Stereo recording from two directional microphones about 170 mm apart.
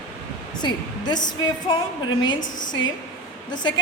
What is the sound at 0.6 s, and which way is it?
Speech, 25° left (ahead or behind).